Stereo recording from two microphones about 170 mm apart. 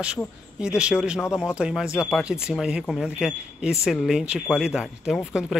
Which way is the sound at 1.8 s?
15° left (ahead or behind).